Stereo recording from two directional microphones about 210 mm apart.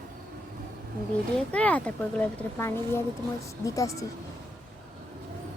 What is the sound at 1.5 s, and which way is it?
Speech, 5° left (ahead or behind).